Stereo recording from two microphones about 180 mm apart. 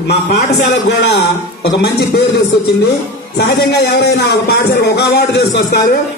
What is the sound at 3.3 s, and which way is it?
A man's voice, 65° left (ahead or behind).